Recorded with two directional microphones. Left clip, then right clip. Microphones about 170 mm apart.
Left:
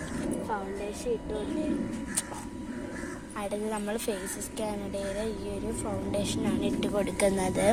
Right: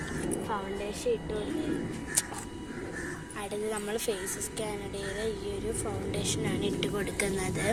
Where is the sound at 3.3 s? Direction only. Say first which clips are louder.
Left 2 dB; 55° left (ahead or behind).